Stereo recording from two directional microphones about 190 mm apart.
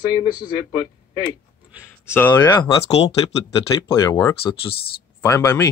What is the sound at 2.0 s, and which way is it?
Speech, 10° left (ahead or behind).